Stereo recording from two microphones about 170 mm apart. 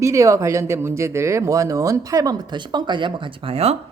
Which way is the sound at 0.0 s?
20° right (ahead or behind).